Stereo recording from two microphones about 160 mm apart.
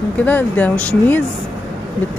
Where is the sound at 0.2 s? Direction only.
10° left (ahead or behind).